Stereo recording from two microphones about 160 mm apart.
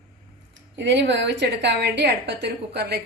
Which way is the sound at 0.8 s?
90° right.